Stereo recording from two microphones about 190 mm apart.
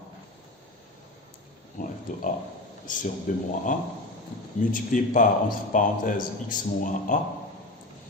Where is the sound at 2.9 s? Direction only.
45° left (ahead or behind).